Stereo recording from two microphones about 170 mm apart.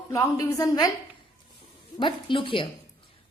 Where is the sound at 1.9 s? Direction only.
30° left (ahead or behind).